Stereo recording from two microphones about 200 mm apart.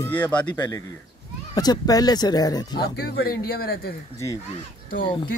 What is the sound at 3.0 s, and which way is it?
Speech, 50° left (ahead or behind).